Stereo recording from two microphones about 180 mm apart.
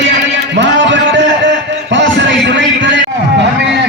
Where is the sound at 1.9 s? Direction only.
85° right.